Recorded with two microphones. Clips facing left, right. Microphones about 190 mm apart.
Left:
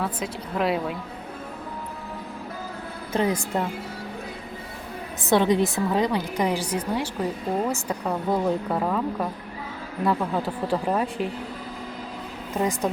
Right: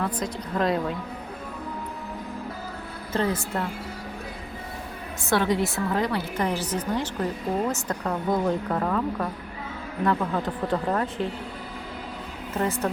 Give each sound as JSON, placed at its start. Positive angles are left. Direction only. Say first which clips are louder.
{"t": 0.0, "sound": "a woman's voice", "louder": "right 1 dB", "side_deg": 5}
{"t": 3.1, "sound": "a woman's voice", "louder": "left 2 dB", "side_deg": 15}
{"t": 5.2, "sound": "a woman's voice", "louder": "left 3 dB", "side_deg": 20}
{"t": 12.5, "sound": "a woman's voice", "louder": "left 1 dB", "side_deg": 15}